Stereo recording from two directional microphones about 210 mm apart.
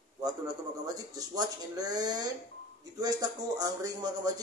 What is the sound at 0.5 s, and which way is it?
Speech, 15° right (ahead or behind).